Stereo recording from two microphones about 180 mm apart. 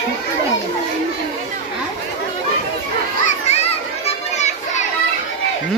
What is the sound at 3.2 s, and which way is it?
Children playing, 35° left (ahead or behind).